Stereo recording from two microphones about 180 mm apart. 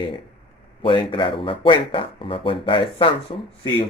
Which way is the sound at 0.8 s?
30° left (ahead or behind).